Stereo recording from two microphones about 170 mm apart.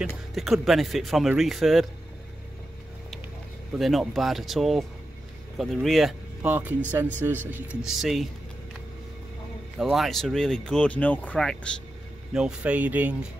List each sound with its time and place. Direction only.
0.3 s speech: centre (ahead or behind)
3.7 s speech: centre (ahead or behind)
7.2 s speech: 20° right (ahead or behind)
7.5 s speech: 5° right (ahead or behind)
9.8 s speech: centre (ahead or behind)
12.4 s speech: 5° right (ahead or behind)